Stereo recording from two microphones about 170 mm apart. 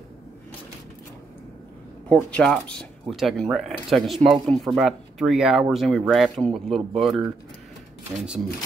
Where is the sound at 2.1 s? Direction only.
5° left (ahead or behind).